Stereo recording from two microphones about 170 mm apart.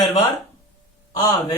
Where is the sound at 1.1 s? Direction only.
20° left (ahead or behind).